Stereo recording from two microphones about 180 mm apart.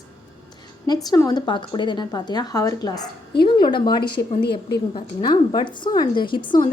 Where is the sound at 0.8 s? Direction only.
20° left (ahead or behind).